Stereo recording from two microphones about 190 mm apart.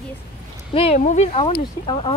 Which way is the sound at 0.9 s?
40° left (ahead or behind).